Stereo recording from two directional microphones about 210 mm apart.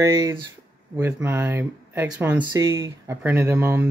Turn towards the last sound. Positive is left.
turn(degrees=-10)  # may be behind; listen again after turning